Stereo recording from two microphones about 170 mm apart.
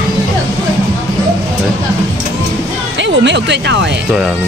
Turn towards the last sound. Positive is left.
turn(degrees=-90)